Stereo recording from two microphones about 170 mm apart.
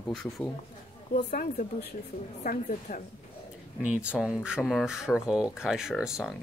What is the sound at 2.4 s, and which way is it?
Speech, 55° left (ahead or behind).